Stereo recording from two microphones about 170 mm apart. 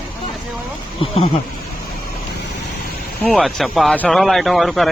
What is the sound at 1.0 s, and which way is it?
Speech, 30° left (ahead or behind).